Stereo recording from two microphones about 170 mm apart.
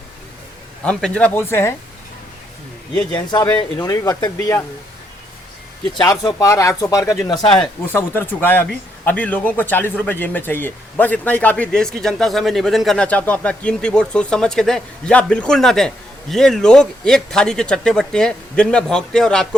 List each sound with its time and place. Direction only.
0.9 s a man's voice: 5° left (ahead or behind)
3.8 s speech: 20° left (ahead or behind)
5.8 s speech: 25° left (ahead or behind)
7.9 s a man's voice: 10° left (ahead or behind)